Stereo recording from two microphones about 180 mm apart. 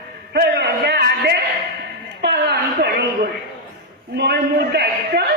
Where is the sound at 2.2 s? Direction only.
65° right (ahead or behind).